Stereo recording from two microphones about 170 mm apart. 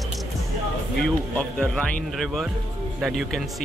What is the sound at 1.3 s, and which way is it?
A man's voice, 5° left (ahead or behind).